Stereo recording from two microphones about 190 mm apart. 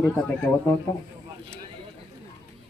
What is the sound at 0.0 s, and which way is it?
Speech, 10° left (ahead or behind).